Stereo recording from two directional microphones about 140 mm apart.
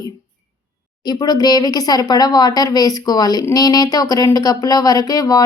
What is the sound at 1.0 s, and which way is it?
Speech, 30° left (ahead or behind).